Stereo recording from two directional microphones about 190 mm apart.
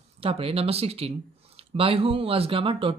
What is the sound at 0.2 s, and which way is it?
Speech, 30° right (ahead or behind).